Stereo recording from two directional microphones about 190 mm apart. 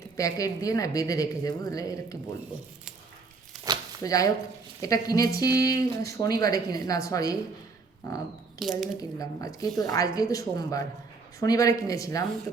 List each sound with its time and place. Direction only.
0.2 s speech: 15° left (ahead or behind)
3.7 s a sound: 20° right (ahead or behind)
4.0 s speech: 20° left (ahead or behind)
8.5 s speech: centre (ahead or behind)
9.0 s speech: 20° left (ahead or behind)